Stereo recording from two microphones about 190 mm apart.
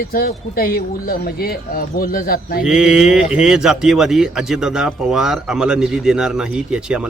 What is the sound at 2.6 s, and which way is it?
Speech, 5° right (ahead or behind).